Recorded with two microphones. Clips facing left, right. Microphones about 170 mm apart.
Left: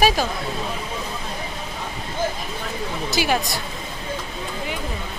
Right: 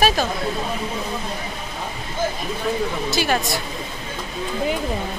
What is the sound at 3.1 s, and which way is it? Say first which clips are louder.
Speech: left 1 dB; 10° left (ahead or behind).